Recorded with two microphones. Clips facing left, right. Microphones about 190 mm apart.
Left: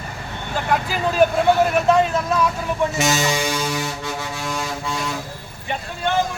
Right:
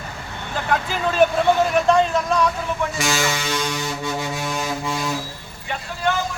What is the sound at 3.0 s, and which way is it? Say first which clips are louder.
Speech: left 3 dB; 20° left (ahead or behind).